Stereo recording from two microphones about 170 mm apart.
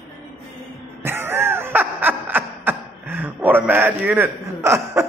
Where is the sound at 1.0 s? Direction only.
15° right (ahead or behind).